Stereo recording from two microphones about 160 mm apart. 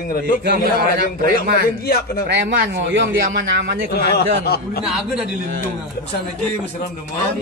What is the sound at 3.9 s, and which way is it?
Speech, 80° left.